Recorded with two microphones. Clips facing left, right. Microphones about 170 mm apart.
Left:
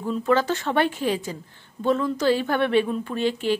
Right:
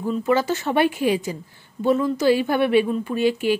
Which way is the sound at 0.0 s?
10° right (ahead or behind).